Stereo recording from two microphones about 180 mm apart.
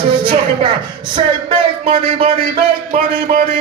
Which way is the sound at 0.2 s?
30° right (ahead or behind).